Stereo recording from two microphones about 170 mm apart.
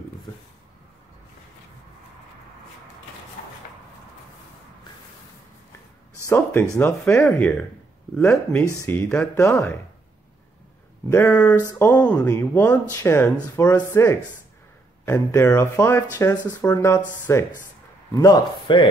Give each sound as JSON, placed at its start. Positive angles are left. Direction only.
{"t": 6.2, "sound": "speech", "side_deg": 15}
{"t": 8.8, "sound": "speech", "side_deg": 10}
{"t": 11.1, "sound": "a man's voice", "side_deg": 15}